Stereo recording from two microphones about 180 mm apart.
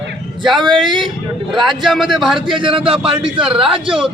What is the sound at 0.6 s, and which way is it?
Speech, 25° right (ahead or behind).